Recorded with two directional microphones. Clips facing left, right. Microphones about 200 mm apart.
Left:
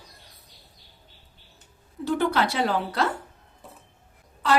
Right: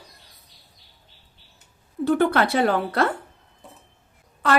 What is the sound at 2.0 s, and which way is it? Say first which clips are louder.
Speech: right 4 dB; 55° right (ahead or behind).